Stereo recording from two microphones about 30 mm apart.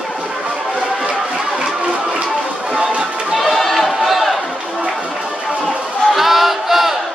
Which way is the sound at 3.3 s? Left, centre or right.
Centre.